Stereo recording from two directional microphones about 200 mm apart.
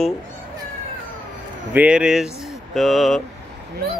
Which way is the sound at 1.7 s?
5° right (ahead or behind).